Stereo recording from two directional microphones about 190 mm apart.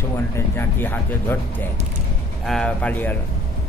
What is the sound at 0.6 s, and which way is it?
Speech, 10° left (ahead or behind).